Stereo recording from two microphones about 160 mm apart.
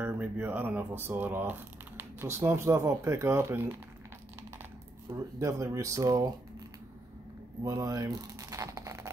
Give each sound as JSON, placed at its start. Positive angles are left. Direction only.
{"t": 0.0, "sound": "speech", "side_deg": -10}
{"t": 5.1, "sound": "speech", "side_deg": -20}
{"t": 7.6, "sound": "speech", "side_deg": -20}